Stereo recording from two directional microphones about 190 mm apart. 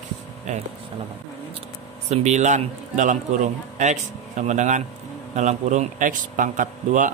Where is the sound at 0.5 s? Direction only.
40° right (ahead or behind).